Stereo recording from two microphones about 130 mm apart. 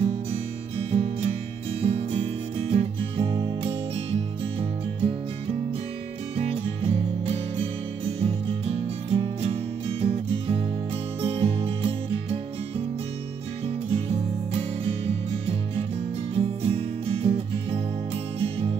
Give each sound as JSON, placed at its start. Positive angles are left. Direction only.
{"t": 0.3, "sound": "music", "side_deg": -50}